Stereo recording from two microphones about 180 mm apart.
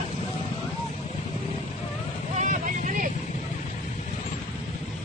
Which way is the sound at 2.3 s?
45° right (ahead or behind).